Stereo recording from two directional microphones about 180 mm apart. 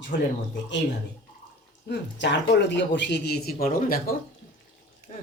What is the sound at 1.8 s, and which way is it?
Speech, 75° left (ahead or behind).